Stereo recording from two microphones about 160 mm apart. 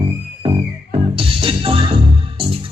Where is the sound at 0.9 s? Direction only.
35° right (ahead or behind).